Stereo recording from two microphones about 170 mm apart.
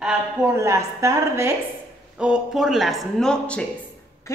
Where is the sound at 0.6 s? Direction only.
20° right (ahead or behind).